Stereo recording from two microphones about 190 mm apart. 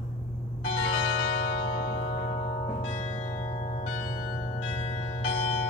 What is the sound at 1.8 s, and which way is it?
Music, 65° left (ahead or behind).